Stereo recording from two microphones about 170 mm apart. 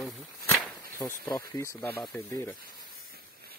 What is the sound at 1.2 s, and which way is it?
Speech, 15° left (ahead or behind).